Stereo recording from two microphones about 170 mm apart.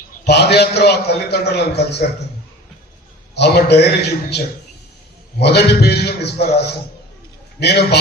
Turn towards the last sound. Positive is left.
turn(degrees=70)  # may be behind; listen again after turning